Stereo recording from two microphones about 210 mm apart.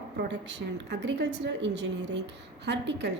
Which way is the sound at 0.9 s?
55° right (ahead or behind).